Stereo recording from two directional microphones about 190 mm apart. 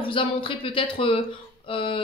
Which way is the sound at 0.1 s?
25° left (ahead or behind).